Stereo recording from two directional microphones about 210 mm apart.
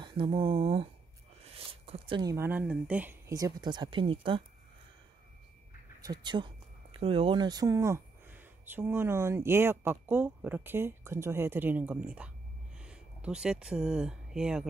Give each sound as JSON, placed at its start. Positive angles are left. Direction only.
{"t": 0.0, "sound": "speech", "side_deg": -25}
{"t": 5.9, "sound": "speech", "side_deg": -20}